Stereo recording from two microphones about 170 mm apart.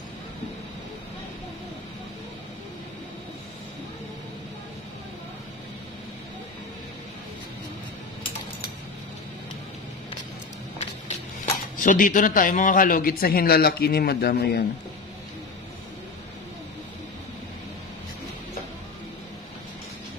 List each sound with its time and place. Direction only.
11.4 s speech: 50° left (ahead or behind); by 14.6 s 70° left (ahead or behind)